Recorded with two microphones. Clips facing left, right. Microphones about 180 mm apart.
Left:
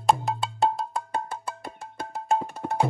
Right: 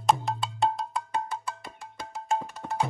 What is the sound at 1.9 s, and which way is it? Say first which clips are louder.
Music: left 4 dB; 55° left (ahead or behind).